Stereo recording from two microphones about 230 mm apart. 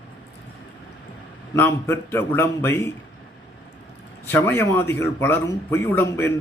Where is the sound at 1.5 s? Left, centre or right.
Centre.